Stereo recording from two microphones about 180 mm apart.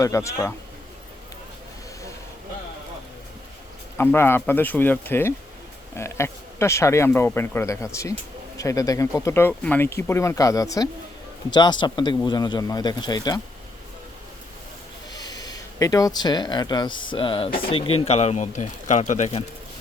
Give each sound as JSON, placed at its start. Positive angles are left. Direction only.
{"t": 0.0, "sound": "speech", "side_deg": 15}
{"t": 3.9, "sound": "speech", "side_deg": 10}
{"t": 15.1, "sound": "speech", "side_deg": 20}